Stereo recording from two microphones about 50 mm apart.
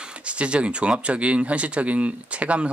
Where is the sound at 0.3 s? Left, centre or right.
Right.